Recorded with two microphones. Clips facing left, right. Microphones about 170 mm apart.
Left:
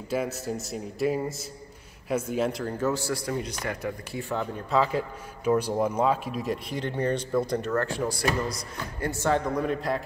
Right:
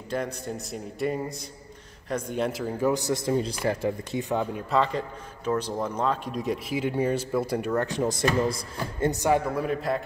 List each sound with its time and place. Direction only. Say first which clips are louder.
0.1 s speech: left 2 dB; 5° left (ahead or behind)
2.8 s speech: right 4 dB; 15° right (ahead or behind)
4.6 s speech: left 3 dB; 5° left (ahead or behind); by 9.1 s 25° right (ahead or behind)
9.1 s speech: left 1 dB; 15° right (ahead or behind)